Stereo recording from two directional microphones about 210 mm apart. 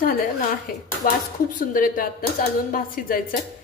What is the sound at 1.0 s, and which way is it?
A woman's voice, 40° left (ahead or behind).